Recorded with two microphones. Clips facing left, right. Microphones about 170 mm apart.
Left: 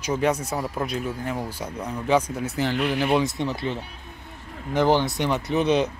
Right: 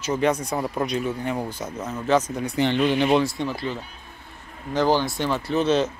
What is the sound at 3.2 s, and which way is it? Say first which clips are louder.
Speech: even; 20° left (ahead or behind).